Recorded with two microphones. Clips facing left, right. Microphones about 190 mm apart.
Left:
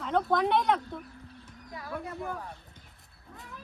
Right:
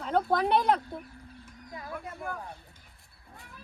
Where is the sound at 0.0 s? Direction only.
35° right (ahead or behind).